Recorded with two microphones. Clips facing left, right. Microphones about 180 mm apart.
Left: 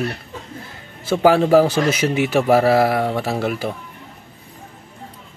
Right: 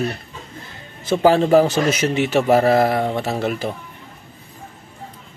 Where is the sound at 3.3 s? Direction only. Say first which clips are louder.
Even; 10° left (ahead or behind).